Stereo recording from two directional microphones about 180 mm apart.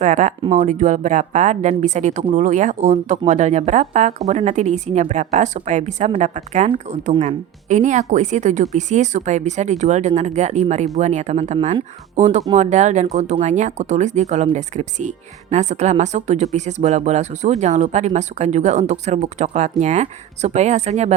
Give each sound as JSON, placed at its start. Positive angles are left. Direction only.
{"t": 0.0, "sound": "a woman's voice", "side_deg": -40}